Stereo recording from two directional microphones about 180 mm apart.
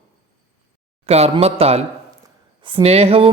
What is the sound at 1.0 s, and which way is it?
Speech, 35° right (ahead or behind).